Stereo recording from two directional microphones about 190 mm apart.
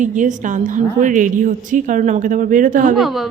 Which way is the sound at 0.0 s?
40° right (ahead or behind).